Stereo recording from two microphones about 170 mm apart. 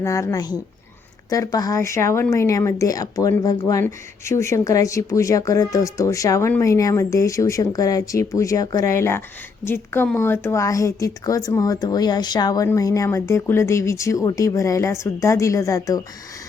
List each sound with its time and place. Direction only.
0.0 s a woman's voice: 20° left (ahead or behind)